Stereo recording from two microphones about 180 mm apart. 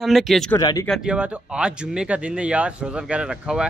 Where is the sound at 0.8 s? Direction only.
Centre (ahead or behind).